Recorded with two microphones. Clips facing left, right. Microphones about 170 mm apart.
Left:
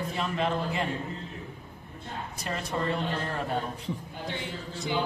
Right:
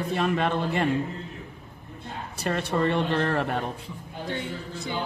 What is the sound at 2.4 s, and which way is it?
Speech, 75° right (ahead or behind).